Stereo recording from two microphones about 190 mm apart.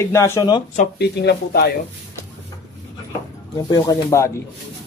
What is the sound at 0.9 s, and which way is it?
Speech, 60° left (ahead or behind).